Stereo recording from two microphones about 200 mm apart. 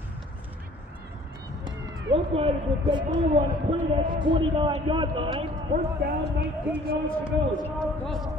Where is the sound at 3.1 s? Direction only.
35° right (ahead or behind).